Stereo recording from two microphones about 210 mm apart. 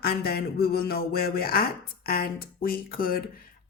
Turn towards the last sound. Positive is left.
turn(degrees=45)  # may be behind; listen again after turning